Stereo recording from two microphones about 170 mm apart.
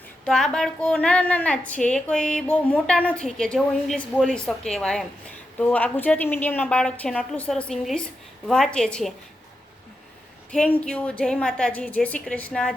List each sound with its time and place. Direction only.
0.3 s a woman's voice: 5° left (ahead or behind)
10.8 s a woman's voice: 5° left (ahead or behind)